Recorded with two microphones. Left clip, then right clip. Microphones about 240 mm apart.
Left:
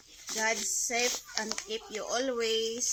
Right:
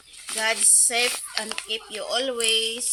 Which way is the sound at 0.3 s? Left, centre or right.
Right.